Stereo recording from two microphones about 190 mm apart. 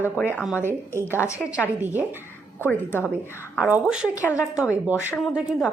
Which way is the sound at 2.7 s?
10° left (ahead or behind).